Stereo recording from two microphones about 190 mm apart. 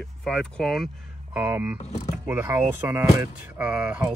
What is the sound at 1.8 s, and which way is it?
Speech, 40° left (ahead or behind).